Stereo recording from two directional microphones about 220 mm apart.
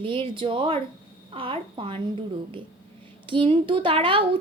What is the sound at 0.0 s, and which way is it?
A woman's voice, 25° right (ahead or behind).